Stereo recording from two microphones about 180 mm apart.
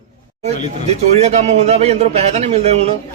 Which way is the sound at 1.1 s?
35° right (ahead or behind).